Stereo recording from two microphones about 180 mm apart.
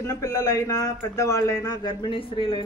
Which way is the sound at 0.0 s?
20° left (ahead or behind).